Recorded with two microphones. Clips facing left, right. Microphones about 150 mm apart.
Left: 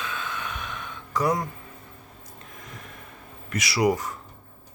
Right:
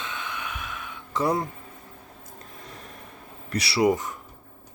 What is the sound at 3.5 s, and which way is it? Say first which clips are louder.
Speech: right 1 dB; 30° right (ahead or behind).